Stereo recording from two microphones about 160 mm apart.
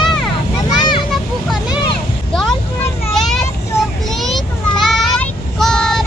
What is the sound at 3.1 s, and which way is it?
Vehicle, centre (ahead or behind).